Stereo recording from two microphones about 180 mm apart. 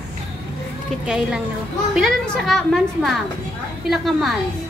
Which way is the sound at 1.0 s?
5° right (ahead or behind).